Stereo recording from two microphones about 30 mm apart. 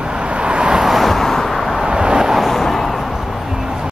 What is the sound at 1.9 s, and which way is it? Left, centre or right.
Vehicle, right.